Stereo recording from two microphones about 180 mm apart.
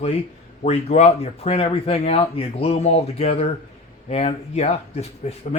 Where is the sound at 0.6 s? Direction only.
35° left (ahead or behind).